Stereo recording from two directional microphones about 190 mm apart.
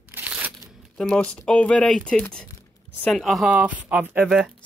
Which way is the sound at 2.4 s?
10° left (ahead or behind).